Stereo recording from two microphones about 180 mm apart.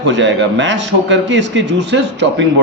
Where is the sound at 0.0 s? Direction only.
90° right.